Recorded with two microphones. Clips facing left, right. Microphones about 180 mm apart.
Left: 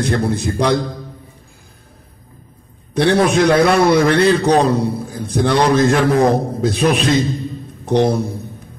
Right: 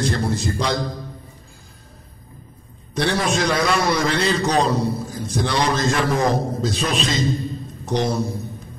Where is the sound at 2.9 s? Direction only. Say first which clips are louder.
Left 8 dB; 60° left (ahead or behind).